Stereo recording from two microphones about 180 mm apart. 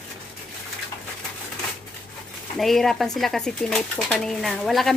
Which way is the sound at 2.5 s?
Centre (ahead or behind).